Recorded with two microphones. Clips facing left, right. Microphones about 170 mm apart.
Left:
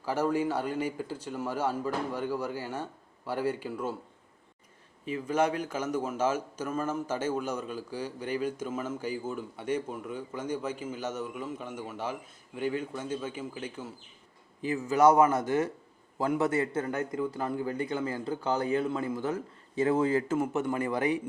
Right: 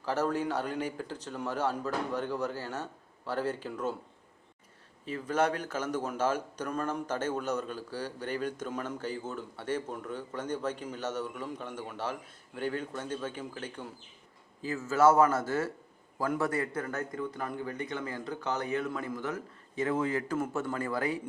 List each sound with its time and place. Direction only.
0.0 s a man's voice: 10° left (ahead or behind)
5.0 s a man's voice: 10° left (ahead or behind); by 20.4 s 25° left (ahead or behind)
20.4 s a man's voice: 15° left (ahead or behind)